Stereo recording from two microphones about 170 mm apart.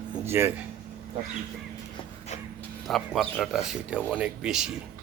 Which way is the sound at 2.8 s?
Centre (ahead or behind).